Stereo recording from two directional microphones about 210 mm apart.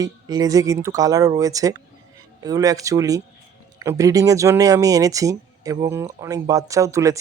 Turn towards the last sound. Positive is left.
turn(degrees=-15)  # may be behind; listen again after turning